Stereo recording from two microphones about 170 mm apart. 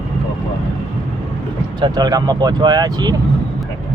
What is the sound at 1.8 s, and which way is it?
Speech, 25° right (ahead or behind).